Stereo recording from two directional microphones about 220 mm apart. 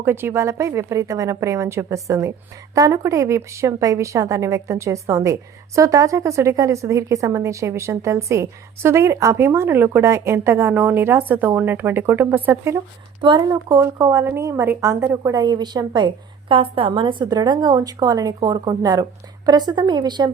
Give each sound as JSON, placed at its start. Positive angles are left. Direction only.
{"t": 0.0, "sound": "a woman's voice", "side_deg": -10}